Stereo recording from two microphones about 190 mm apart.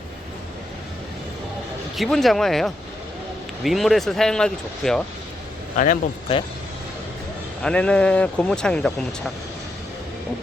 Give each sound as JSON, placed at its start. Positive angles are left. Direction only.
{"t": 2.0, "sound": "speech", "side_deg": 0}
{"t": 5.7, "sound": "a man's voice", "side_deg": 45}
{"t": 7.6, "sound": "speech", "side_deg": 5}